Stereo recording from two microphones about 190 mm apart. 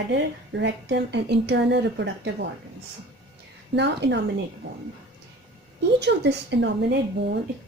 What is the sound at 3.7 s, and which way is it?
Speech, 65° right (ahead or behind).